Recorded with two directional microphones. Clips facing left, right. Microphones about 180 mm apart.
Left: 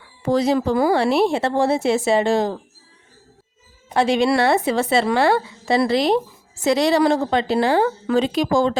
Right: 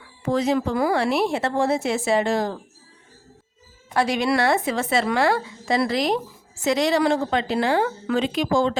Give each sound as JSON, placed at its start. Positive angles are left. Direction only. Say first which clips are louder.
{"t": 0.2, "sound": "speech", "louder": "left 3 dB", "side_deg": 35}
{"t": 3.8, "sound": "a woman's voice", "louder": "left 4 dB", "side_deg": 25}